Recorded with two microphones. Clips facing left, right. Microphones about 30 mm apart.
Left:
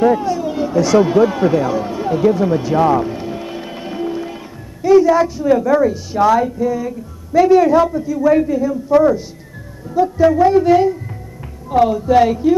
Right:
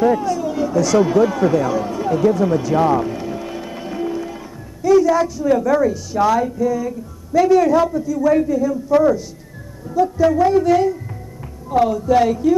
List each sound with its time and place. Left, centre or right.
0.0 s a woman's voice: left
3.0 s music: centre
4.8 s a woman's voice: left